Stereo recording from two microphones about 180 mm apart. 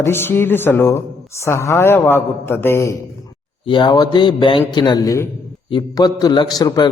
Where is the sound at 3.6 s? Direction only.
25° left (ahead or behind).